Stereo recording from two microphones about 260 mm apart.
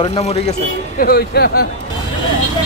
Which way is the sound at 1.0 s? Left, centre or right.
Left.